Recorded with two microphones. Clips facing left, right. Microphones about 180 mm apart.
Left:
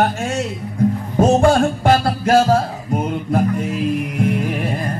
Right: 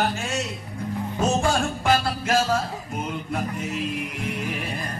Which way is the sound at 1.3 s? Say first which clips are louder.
Left 10 dB; 55° left (ahead or behind).